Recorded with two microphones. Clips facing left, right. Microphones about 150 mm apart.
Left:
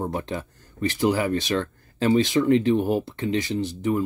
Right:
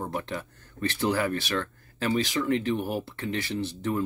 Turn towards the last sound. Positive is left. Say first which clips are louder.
# left 5 dB
turn(degrees=10)  # may be behind; listen again after turning